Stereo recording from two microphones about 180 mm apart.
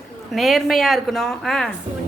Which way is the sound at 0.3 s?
Centre (ahead or behind).